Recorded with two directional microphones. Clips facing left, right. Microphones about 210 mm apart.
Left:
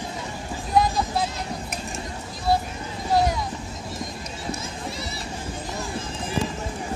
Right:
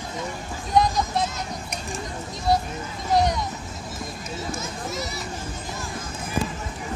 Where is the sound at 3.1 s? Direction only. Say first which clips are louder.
Even; 5° left (ahead or behind).